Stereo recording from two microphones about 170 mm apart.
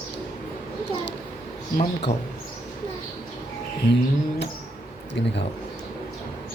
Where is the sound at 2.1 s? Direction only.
40° left (ahead or behind).